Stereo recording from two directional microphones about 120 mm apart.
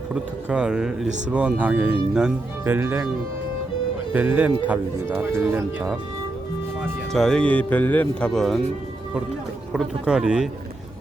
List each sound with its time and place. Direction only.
0.1 s speech: 5° right (ahead or behind)
4.1 s speech: 15° right (ahead or behind)
7.1 s speech: 5° left (ahead or behind)
8.3 s speech: 5° left (ahead or behind)
9.7 s speech: 5° right (ahead or behind)